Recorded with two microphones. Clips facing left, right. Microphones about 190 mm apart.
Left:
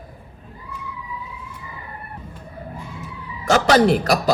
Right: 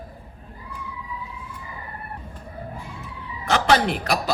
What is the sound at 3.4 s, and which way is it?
Speech, 45° left (ahead or behind).